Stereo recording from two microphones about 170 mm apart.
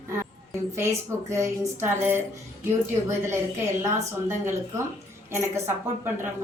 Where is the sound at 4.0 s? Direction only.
15° right (ahead or behind).